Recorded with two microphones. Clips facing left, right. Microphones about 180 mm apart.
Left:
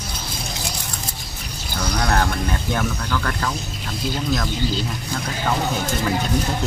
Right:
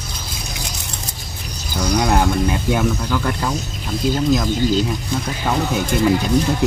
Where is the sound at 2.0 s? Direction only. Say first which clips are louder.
Right 4 dB; 15° right (ahead or behind).